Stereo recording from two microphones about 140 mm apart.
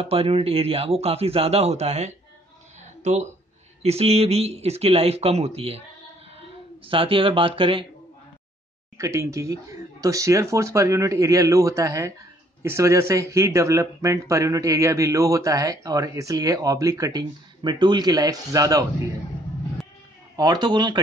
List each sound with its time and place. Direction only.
0.0 s a man's voice: 45° right (ahead or behind)
2.8 s a sound: 55° right (ahead or behind)
3.8 s a man's voice: 50° right (ahead or behind)
6.9 s speech: 40° right (ahead or behind)
8.9 s speech: 20° right (ahead or behind)
20.3 s speech: 30° right (ahead or behind)